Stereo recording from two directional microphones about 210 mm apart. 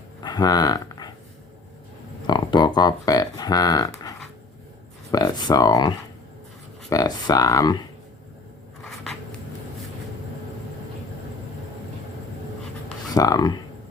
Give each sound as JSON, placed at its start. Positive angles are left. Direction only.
{"t": 0.2, "sound": "a sound", "side_deg": 20}
{"t": 2.2, "sound": "speech", "side_deg": 20}
{"t": 5.1, "sound": "speech", "side_deg": 20}
{"t": 6.9, "sound": "speech", "side_deg": 15}
{"t": 8.8, "sound": "scissors", "side_deg": 0}
{"t": 13.1, "sound": "speech", "side_deg": 15}